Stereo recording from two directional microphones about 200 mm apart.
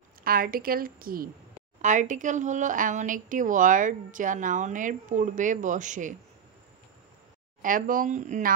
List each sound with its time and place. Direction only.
0.2 s a woman's voice: 45° right (ahead or behind)
7.6 s a woman's voice: 40° right (ahead or behind)